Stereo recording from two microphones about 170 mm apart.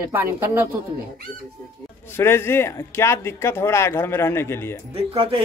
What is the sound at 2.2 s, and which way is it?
Speech, 15° left (ahead or behind).